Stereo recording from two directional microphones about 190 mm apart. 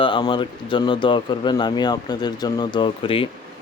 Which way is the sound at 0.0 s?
25° left (ahead or behind).